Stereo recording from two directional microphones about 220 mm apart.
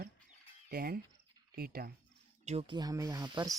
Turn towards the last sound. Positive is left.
turn(degrees=-20)  # may be behind; listen again after turning